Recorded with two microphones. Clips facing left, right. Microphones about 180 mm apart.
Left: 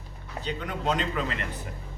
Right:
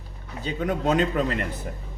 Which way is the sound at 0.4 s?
45° right (ahead or behind).